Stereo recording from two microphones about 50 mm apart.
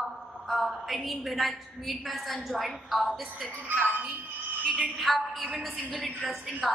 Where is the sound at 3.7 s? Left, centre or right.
Right.